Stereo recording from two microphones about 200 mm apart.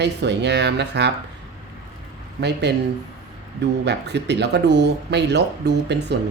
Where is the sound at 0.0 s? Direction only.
60° right (ahead or behind).